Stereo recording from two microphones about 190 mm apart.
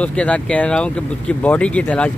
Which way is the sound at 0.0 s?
5° left (ahead or behind).